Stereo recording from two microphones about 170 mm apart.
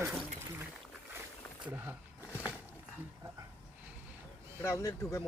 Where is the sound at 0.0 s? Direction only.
10° right (ahead or behind).